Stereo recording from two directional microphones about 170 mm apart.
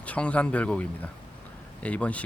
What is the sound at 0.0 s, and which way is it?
Speech, 5° left (ahead or behind).